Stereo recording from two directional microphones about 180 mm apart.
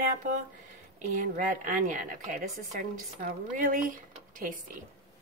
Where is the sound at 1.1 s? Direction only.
45° right (ahead or behind).